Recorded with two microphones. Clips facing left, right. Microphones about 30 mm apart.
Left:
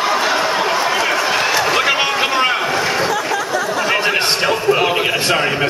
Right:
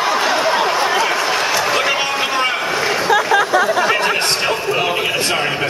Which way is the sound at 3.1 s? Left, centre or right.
Right.